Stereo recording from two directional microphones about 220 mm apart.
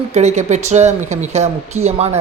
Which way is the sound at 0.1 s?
30° right (ahead or behind).